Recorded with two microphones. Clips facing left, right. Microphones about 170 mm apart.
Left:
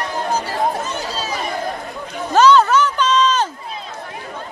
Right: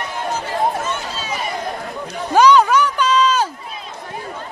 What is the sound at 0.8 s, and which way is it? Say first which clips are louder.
Chatter: even; 40° left (ahead or behind).